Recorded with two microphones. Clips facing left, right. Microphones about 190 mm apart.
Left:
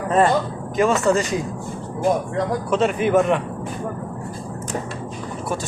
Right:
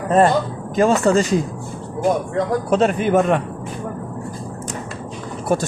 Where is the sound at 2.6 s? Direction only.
40° right (ahead or behind).